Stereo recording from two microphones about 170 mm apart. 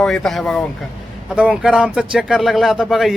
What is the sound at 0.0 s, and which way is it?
A man's voice, centre (ahead or behind).